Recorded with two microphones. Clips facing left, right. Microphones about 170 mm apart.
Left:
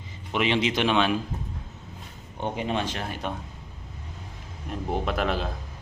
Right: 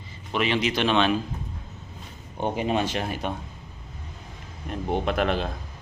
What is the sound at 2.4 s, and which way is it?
Speech, 10° right (ahead or behind).